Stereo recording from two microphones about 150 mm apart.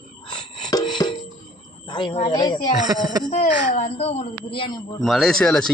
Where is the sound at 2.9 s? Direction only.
25° right (ahead or behind).